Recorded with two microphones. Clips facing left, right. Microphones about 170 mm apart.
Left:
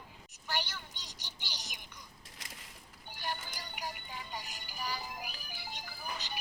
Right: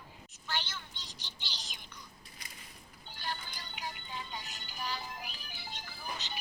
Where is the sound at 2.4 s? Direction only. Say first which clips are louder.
Left 2 dB; 90° left.